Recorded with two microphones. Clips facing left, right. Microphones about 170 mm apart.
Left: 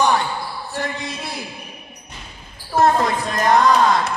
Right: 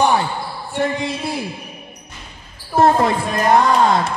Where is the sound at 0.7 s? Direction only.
25° right (ahead or behind).